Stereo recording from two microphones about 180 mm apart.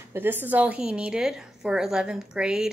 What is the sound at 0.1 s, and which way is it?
A woman's voice, 10° right (ahead or behind).